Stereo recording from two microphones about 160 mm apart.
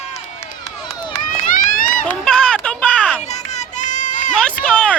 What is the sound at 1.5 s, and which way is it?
Run, 55° left (ahead or behind).